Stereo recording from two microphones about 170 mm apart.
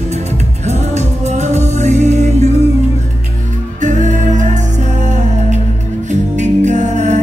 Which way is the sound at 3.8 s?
45° right (ahead or behind).